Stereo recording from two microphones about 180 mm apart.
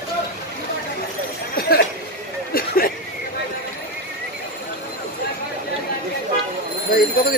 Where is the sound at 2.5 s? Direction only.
55° left (ahead or behind).